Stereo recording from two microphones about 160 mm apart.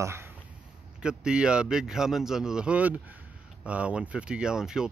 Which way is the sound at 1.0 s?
5° right (ahead or behind).